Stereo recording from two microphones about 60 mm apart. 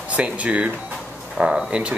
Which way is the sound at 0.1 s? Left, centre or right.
Right.